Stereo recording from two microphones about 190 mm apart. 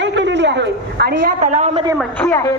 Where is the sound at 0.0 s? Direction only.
70° right (ahead or behind); by 1.8 s 35° right (ahead or behind).